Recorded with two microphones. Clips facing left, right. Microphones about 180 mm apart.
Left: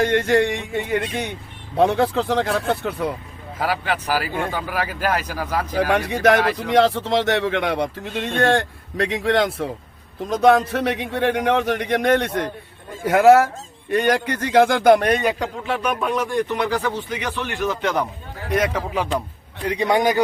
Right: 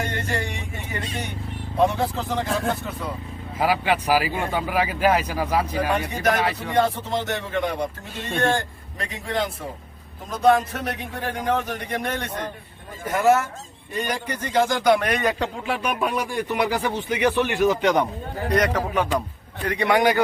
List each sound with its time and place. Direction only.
0.0 s a man's voice: 85° left
3.6 s speech: 10° right (ahead or behind)
5.7 s speech: 85° left
8.4 s a man's voice: 70° left (ahead or behind); by 15.0 s 50° left (ahead or behind)
15.2 s a man's voice: 10° left (ahead or behind)
15.6 s speech: 10° right (ahead or behind)
18.5 s a man's voice: 5° left (ahead or behind)
19.6 s a man's voice: 20° left (ahead or behind)